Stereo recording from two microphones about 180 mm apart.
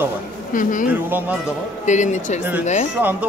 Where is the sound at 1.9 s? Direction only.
40° left (ahead or behind).